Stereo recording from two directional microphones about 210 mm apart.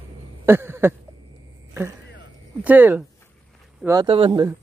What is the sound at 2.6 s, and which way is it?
Speech, 10° right (ahead or behind).